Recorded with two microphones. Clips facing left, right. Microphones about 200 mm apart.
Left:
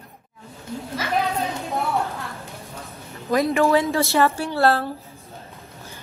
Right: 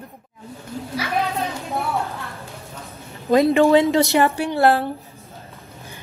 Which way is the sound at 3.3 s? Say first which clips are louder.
Right 4 dB; 25° right (ahead or behind).